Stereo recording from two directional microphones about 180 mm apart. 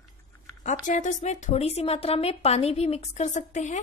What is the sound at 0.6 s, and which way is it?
A woman's voice, 40° left (ahead or behind).